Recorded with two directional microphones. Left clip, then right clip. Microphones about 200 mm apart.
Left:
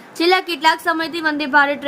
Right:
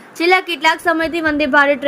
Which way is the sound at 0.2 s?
10° right (ahead or behind).